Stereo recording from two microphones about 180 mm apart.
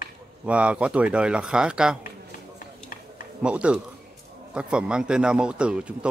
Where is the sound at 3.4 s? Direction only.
5° right (ahead or behind).